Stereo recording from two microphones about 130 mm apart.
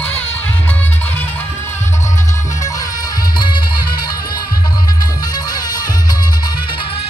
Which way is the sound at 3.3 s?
35° left (ahead or behind).